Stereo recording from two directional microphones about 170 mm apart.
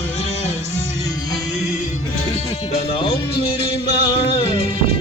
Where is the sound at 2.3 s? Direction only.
35° left (ahead or behind).